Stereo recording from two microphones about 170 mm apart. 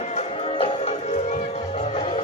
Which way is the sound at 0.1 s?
35° left (ahead or behind).